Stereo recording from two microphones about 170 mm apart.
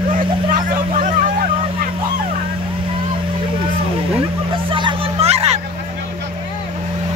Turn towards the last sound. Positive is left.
turn(degrees=-40)  # may be behind; listen again after turning